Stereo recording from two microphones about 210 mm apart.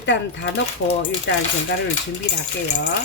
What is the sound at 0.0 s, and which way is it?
Speech, 55° left (ahead or behind).